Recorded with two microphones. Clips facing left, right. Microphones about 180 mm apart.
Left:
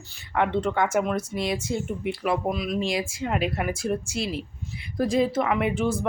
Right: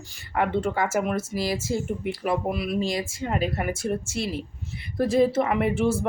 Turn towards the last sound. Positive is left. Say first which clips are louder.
# right 1 dB
turn(degrees=0)  # may be behind; listen again after turning